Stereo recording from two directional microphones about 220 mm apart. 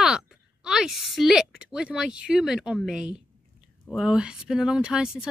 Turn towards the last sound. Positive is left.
turn(degrees=-5)  # may be behind; listen again after turning